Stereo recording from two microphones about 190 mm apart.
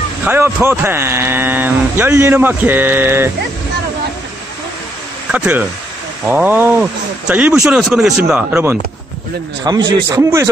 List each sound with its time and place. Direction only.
0.2 s speech: 10° right (ahead or behind)
5.3 s speech: 5° right (ahead or behind)
9.7 s a man's voice: 20° right (ahead or behind)